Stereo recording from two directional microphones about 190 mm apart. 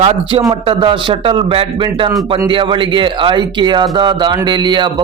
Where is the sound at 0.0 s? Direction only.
30° right (ahead or behind).